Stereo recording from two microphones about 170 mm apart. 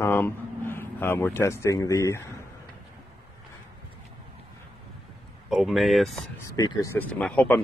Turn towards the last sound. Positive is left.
turn(degrees=5)  # may be behind; listen again after turning